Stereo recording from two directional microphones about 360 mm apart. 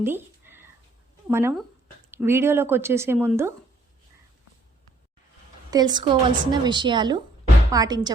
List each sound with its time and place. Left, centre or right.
0.0 s a sound: centre
1.3 s a woman's voice: centre
5.7 s a woman's voice: centre